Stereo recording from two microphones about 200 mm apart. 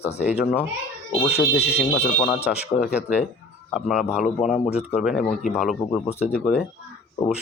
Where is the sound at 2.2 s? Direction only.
Centre (ahead or behind).